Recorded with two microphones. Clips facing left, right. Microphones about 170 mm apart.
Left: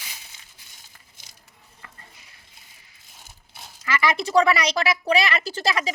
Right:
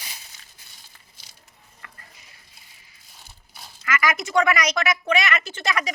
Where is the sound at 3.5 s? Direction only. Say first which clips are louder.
Even; 30° left (ahead or behind).